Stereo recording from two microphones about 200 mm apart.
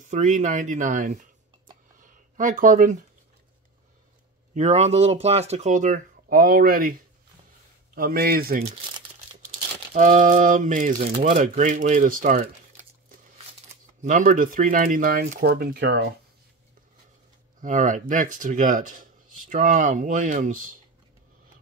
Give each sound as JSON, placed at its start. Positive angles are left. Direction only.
{"t": 0.1, "sound": "speech", "side_deg": -40}
{"t": 2.0, "sound": "a sound", "side_deg": -40}
{"t": 4.6, "sound": "speech", "side_deg": -35}
{"t": 9.9, "sound": "speech", "side_deg": -40}
{"t": 14.0, "sound": "speech", "side_deg": -40}
{"t": 17.6, "sound": "speech", "side_deg": -40}